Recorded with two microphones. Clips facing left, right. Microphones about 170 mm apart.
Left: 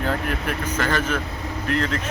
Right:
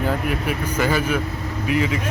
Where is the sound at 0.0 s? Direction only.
5° right (ahead or behind).